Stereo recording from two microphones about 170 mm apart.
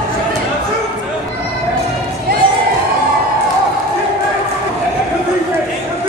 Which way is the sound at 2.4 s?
30° right (ahead or behind).